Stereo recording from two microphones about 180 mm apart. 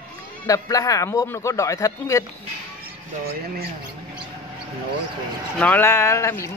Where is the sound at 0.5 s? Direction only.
20° left (ahead or behind).